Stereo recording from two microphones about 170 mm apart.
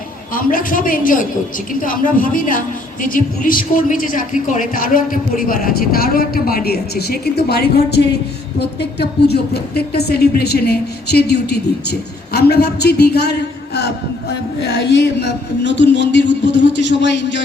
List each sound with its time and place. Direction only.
0.3 s a woman's voice: 55° left (ahead or behind); by 13.3 s 75° left (ahead or behind)
14.6 s speech: 85° left